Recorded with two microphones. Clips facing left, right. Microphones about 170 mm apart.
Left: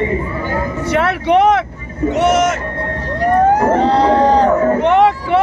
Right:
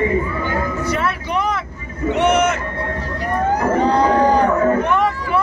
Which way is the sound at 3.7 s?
75° left (ahead or behind).